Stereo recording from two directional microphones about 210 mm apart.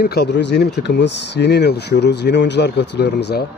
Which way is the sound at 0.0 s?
50° left (ahead or behind).